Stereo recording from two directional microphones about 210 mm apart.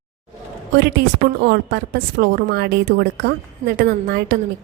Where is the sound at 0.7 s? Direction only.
50° right (ahead or behind).